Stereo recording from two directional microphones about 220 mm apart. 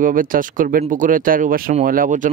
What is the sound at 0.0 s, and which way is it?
Speech, 40° right (ahead or behind).